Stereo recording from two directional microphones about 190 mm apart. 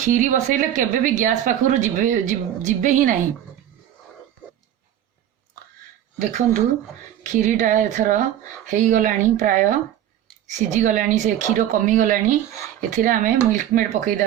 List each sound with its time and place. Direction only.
0.0 s speech: 45° right (ahead or behind)
6.1 s a woman's voice: 40° right (ahead or behind)
10.8 s a woman's voice: 40° right (ahead or behind)